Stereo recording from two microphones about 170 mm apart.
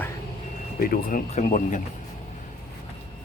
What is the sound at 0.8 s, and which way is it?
Speech, 55° left (ahead or behind).